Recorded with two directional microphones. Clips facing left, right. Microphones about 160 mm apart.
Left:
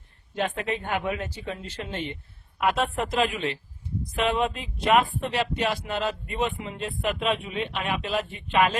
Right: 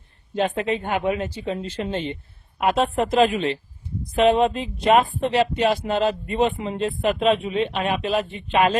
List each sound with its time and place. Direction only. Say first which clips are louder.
0.3 s speech: right 5 dB; 25° right (ahead or behind)